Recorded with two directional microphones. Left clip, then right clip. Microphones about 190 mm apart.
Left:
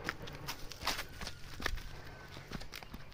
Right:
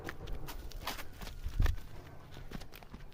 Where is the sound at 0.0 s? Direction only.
20° left (ahead or behind).